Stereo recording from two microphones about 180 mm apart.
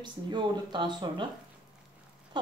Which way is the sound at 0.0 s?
25° right (ahead or behind).